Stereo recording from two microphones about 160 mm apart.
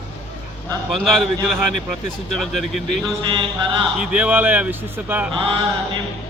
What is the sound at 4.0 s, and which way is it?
Speech, 10° right (ahead or behind).